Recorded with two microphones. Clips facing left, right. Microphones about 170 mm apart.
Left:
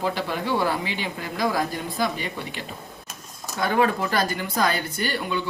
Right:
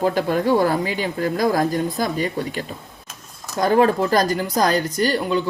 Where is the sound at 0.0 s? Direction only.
45° right (ahead or behind).